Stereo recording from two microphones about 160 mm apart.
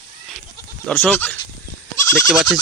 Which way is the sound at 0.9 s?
10° left (ahead or behind).